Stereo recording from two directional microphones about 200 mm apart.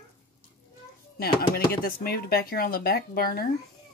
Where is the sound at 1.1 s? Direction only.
50° left (ahead or behind).